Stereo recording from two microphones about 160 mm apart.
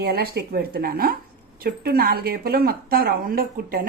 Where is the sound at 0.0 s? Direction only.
75° right (ahead or behind).